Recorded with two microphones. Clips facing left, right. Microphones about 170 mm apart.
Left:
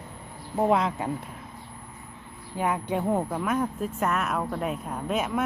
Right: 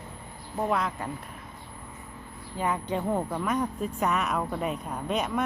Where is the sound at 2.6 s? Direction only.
10° left (ahead or behind).